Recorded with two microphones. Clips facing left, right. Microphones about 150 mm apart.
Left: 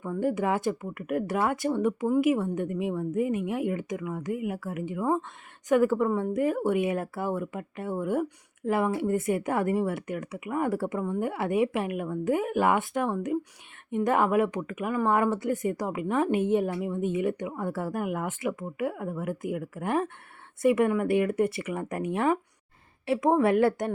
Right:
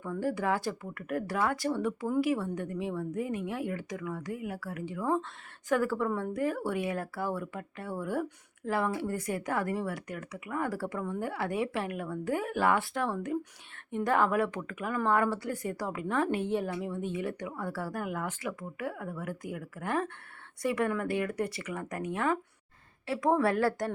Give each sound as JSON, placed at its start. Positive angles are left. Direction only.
{"t": 0.0, "sound": "speech", "side_deg": 20}